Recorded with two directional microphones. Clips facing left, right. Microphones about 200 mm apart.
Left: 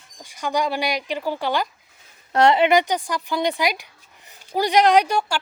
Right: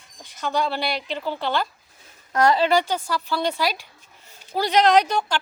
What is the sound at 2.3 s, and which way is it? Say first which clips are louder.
Speech: left 2 dB; 25° left (ahead or behind).